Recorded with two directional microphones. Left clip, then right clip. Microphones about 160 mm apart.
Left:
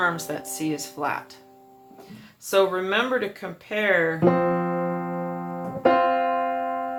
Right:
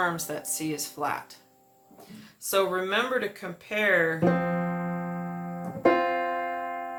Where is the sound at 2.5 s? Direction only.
30° left (ahead or behind).